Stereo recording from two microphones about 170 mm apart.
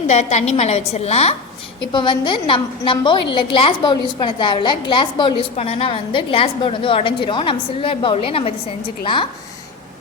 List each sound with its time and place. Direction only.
0.1 s a woman's voice: 40° left (ahead or behind)
1.8 s a woman's voice: 25° left (ahead or behind)